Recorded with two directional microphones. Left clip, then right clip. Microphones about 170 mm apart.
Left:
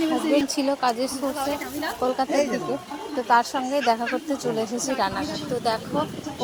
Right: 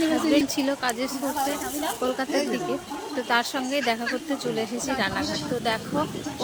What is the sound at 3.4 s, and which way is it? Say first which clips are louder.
Speech: left 3 dB; 25° right (ahead or behind).